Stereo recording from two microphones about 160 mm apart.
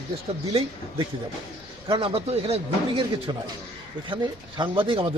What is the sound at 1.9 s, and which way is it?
A man's voice, 35° right (ahead or behind).